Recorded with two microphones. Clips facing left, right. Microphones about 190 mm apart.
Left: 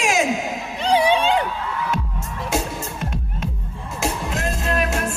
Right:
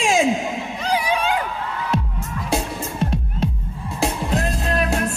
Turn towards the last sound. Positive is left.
turn(degrees=-35)  # may be behind; listen again after turning